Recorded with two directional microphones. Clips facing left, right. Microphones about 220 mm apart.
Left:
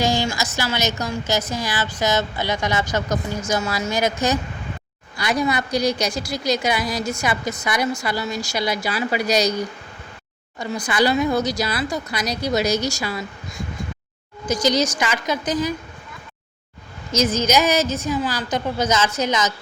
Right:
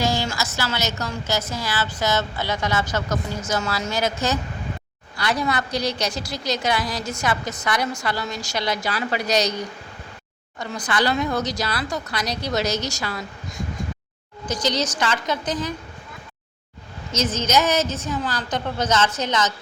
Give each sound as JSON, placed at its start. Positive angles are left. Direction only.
{"t": 0.0, "sound": "a woman's voice", "side_deg": 15}
{"t": 14.4, "sound": "a woman's voice", "side_deg": 10}
{"t": 17.1, "sound": "a woman's voice", "side_deg": 10}